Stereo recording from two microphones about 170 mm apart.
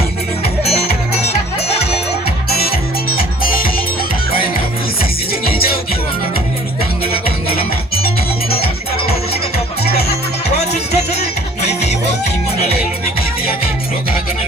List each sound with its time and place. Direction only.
0.6 s music: 40° left (ahead or behind)
3.2 s music: 60° left (ahead or behind)
7.0 s music: 35° left (ahead or behind)
10.9 s music: 40° left (ahead or behind)